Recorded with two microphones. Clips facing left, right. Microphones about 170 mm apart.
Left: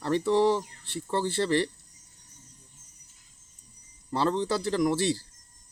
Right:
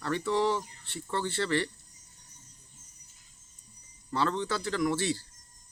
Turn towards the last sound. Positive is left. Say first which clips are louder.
# left 4 dB
turn(degrees=35)  # may be behind; listen again after turning